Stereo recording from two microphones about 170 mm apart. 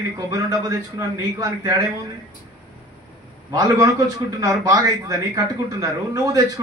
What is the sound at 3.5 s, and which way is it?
A man's voice, 20° right (ahead or behind).